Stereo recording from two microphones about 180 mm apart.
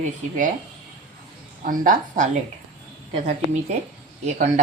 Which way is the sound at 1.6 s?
50° right (ahead or behind).